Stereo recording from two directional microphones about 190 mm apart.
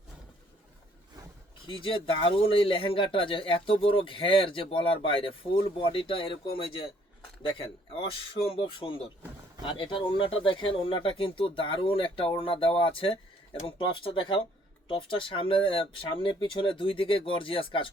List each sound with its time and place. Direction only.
1.6 s speech: 25° left (ahead or behind)